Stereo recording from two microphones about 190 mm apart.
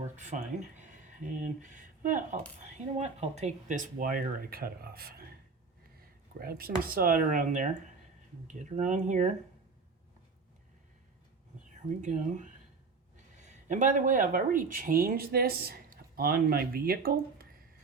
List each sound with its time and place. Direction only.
0.2 s speech: 40° right (ahead or behind)
11.9 s speech: 40° right (ahead or behind)